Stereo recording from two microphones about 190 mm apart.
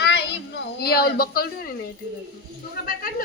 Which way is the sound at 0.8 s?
55° left (ahead or behind).